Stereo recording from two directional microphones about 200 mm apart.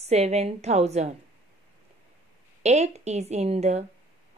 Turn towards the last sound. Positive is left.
turn(degrees=-35)  # may be behind; listen again after turning